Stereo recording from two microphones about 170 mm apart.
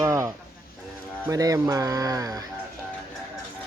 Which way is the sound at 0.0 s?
20° right (ahead or behind).